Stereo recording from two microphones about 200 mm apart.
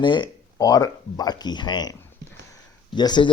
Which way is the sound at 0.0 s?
25° left (ahead or behind).